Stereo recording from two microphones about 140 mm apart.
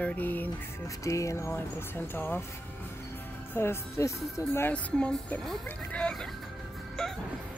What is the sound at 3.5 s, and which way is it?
Speech, 15° left (ahead or behind).